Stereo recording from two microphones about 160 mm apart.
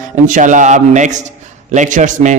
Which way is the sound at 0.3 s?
55° right (ahead or behind).